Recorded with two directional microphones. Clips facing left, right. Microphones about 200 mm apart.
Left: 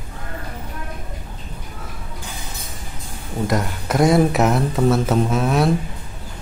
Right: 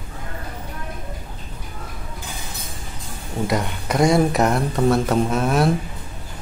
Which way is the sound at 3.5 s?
Centre (ahead or behind).